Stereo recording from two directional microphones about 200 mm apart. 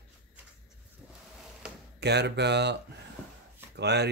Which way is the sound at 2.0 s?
55° right (ahead or behind).